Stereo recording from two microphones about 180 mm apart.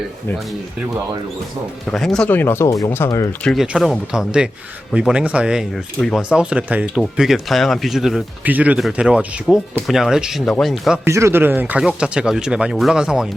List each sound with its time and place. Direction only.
1.9 s speech: 5° left (ahead or behind)
3.4 s speech: centre (ahead or behind)
11.0 s speech: 15° right (ahead or behind)